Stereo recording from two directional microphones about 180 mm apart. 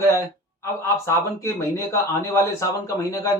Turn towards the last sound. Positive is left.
turn(degrees=20)  # may be behind; listen again after turning